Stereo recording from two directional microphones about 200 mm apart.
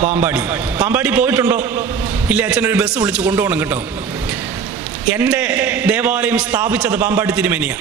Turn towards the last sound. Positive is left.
turn(degrees=-5)  # may be behind; listen again after turning